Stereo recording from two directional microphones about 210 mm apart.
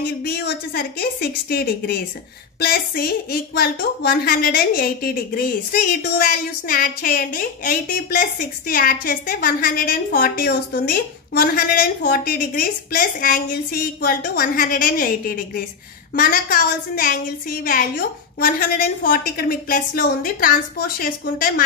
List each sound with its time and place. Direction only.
0.2 s a woman's voice: 50° left (ahead or behind)